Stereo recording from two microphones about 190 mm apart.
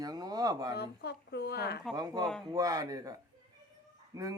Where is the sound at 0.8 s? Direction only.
60° left (ahead or behind).